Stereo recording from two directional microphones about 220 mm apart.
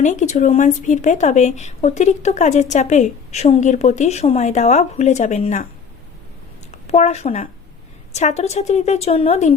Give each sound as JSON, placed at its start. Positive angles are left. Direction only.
{"t": 0.0, "sound": "a woman's voice", "side_deg": 35}
{"t": 6.8, "sound": "a woman's voice", "side_deg": 30}